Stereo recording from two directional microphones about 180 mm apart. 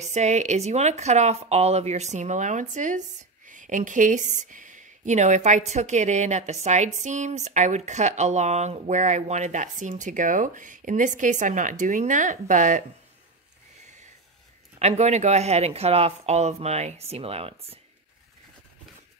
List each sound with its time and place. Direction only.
0.0 s speech: 40° right (ahead or behind)
14.8 s speech: 40° right (ahead or behind)